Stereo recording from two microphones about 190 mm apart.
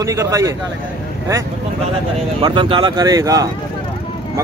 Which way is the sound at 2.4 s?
25° right (ahead or behind).